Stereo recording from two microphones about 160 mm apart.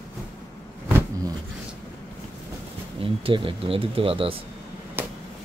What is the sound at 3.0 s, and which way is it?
Speech, 35° right (ahead or behind).